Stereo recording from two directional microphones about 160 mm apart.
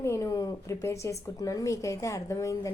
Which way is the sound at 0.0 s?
20° left (ahead or behind).